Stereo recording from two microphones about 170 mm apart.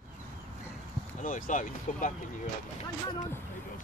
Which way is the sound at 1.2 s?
50° left (ahead or behind).